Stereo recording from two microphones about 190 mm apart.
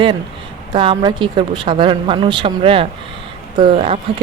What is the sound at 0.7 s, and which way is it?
Speech, 25° right (ahead or behind).